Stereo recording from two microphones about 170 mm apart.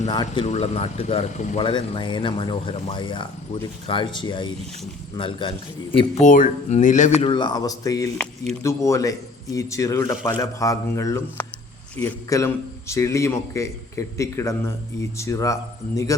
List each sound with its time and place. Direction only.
0.1 s a man's voice: 25° left (ahead or behind)
0.4 s speech: 40° left (ahead or behind)
1.6 s a man's voice: 30° left (ahead or behind)
6.2 s speech: 50° left (ahead or behind)
7.2 s a man's voice: 30° left (ahead or behind)